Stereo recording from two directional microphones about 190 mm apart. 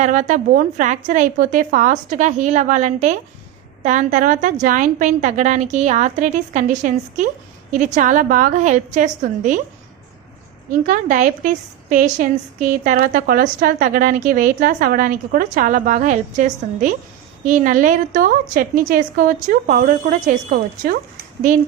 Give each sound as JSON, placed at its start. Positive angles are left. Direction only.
{"t": 0.0, "sound": "a woman's voice", "side_deg": -40}
{"t": 10.7, "sound": "a woman's voice", "side_deg": -45}